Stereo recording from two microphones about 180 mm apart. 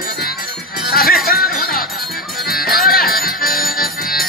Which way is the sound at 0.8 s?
55° left (ahead or behind).